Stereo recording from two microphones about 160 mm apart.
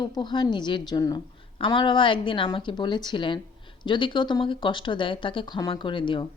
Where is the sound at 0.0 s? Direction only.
25° left (ahead or behind).